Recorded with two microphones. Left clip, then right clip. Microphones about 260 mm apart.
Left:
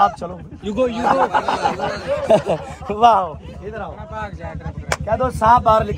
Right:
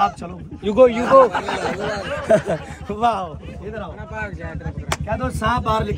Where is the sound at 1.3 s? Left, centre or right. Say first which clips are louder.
Left 5 dB; centre.